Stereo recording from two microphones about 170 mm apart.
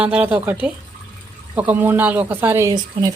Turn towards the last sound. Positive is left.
turn(degrees=-20)  # may be behind; listen again after turning